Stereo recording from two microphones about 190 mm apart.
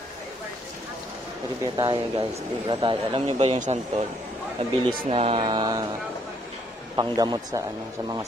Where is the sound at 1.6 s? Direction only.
20° right (ahead or behind); by 4.0 s 35° right (ahead or behind).